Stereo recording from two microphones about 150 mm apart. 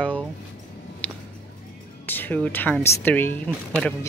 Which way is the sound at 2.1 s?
10° left (ahead or behind).